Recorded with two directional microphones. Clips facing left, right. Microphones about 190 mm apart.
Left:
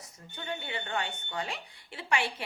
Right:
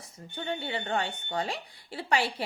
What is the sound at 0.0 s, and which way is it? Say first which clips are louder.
Speech: right 6 dB; 30° right (ahead or behind).